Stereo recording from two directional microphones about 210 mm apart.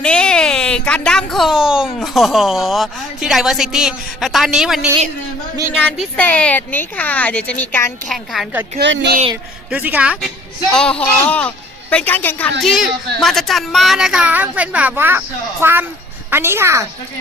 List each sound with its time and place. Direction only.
0.0 s a sound: 5° left (ahead or behind)
2.0 s a woman's voice: centre (ahead or behind)
8.0 s a woman's voice: centre (ahead or behind)
8.8 s speech: 55° right (ahead or behind)
9.6 s a woman's voice: 5° right (ahead or behind)